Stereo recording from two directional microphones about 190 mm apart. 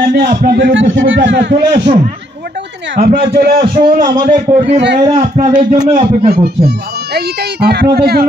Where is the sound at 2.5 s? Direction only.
70° right (ahead or behind); by 4.6 s 45° right (ahead or behind).